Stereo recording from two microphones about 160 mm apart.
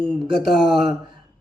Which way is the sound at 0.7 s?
Centre (ahead or behind).